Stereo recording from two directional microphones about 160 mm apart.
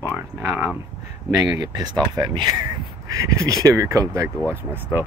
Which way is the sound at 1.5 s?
25° right (ahead or behind).